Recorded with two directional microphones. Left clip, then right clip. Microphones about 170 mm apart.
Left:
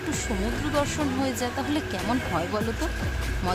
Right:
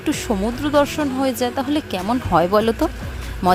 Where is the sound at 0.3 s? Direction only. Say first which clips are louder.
Right 10 dB; 45° right (ahead or behind).